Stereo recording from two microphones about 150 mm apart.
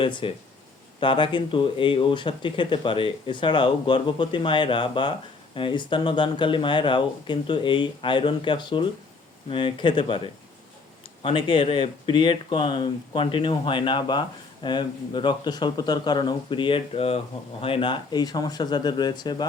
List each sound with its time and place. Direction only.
0.0 s speech: 35° left (ahead or behind)
11.2 s speech: 35° left (ahead or behind)